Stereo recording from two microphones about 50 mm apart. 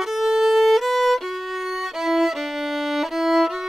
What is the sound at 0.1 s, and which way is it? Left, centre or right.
Violin, centre.